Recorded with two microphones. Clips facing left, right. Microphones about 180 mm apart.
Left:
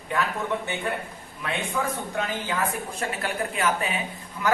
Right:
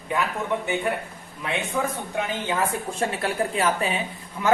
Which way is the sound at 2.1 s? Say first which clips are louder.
Right 3 dB; 25° right (ahead or behind).